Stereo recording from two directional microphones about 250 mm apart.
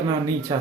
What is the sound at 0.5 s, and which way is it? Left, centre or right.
Speech, centre.